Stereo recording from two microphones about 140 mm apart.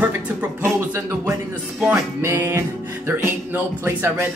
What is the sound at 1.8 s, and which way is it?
Music, 15° right (ahead or behind).